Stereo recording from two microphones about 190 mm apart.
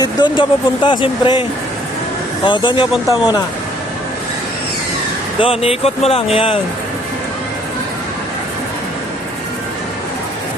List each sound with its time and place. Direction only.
0.0 s speech: 25° left (ahead or behind)
5.4 s speech: 30° left (ahead or behind)